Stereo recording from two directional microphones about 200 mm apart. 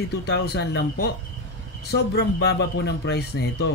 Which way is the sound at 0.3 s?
60° left (ahead or behind).